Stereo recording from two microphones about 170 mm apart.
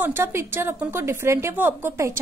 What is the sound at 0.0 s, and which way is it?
A woman's voice, 15° right (ahead or behind).